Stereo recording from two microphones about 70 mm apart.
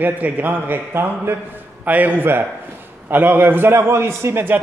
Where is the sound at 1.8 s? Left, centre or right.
Right.